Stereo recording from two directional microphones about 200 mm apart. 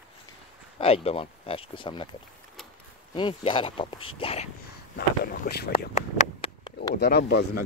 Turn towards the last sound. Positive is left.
turn(degrees=55)  # may be behind; listen again after turning